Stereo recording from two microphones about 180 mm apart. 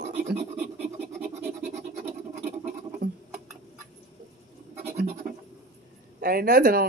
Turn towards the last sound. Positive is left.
turn(degrees=-55)  # may be behind; listen again after turning